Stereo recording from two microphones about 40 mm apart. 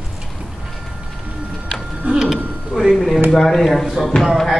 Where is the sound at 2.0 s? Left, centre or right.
Right.